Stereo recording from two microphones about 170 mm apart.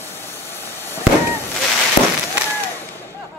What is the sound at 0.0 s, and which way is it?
Vehicle, 15° left (ahead or behind).